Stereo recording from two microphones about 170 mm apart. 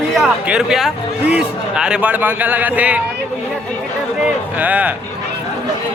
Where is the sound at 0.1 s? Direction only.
5° right (ahead or behind).